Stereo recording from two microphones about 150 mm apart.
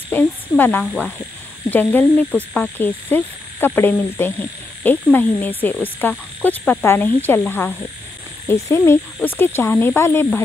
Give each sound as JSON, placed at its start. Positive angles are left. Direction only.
{"t": 0.1, "sound": "speech", "side_deg": 10}